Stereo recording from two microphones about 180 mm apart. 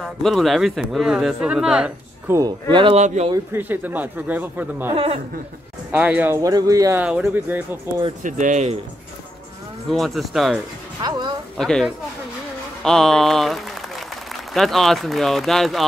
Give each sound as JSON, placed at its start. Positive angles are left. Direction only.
{"t": 0.0, "sound": "speech", "side_deg": 0}
{"t": 2.7, "sound": "speech", "side_deg": -25}
{"t": 3.5, "sound": "speech", "side_deg": -10}
{"t": 4.9, "sound": "speech", "side_deg": -30}
{"t": 5.9, "sound": "speech", "side_deg": -10}
{"t": 8.2, "sound": "speech", "side_deg": -45}
{"t": 9.8, "sound": "speech", "side_deg": 0}
{"t": 11.0, "sound": "speech", "side_deg": -25}
{"t": 11.5, "sound": "a man's voice", "side_deg": 0}